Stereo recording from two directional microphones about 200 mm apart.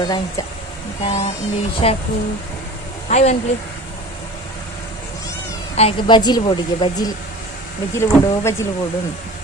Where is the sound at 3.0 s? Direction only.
35° left (ahead or behind).